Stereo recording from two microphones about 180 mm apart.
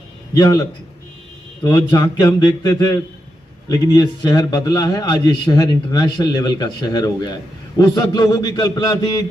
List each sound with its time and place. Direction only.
0.3 s a man's voice: 15° left (ahead or behind)